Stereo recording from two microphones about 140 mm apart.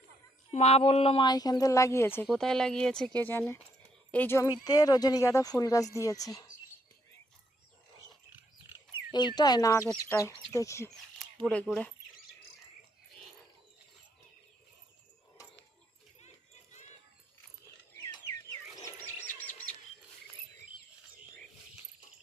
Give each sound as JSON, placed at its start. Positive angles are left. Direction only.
{"t": 0.5, "sound": "speech", "side_deg": 50}
{"t": 1.2, "sound": "speech", "side_deg": 30}
{"t": 2.2, "sound": "speech", "side_deg": 0}
{"t": 4.4, "sound": "speech", "side_deg": 25}
{"t": 8.9, "sound": "speech", "side_deg": 30}
{"t": 11.7, "sound": "speech", "side_deg": 0}
{"t": 19.3, "sound": "chirp", "side_deg": 10}